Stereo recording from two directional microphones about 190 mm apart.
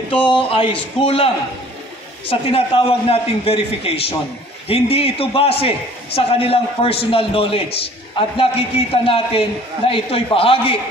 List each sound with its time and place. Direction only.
0.1 s a man's voice: 25° left (ahead or behind)